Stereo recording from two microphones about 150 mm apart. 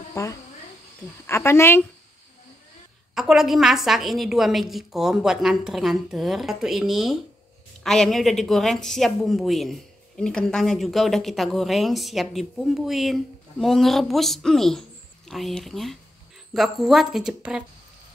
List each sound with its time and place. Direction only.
0.1 s insect: 20° left (ahead or behind)
1.2 s a woman's voice: 15° left (ahead or behind)
3.2 s a woman's voice: centre (ahead or behind)